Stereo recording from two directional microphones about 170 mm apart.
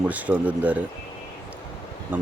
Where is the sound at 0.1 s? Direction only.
10° right (ahead or behind).